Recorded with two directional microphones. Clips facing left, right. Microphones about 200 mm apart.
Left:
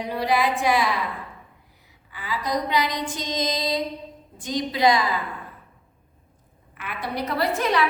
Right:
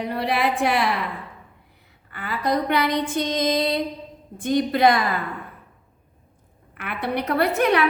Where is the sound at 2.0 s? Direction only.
60° right (ahead or behind).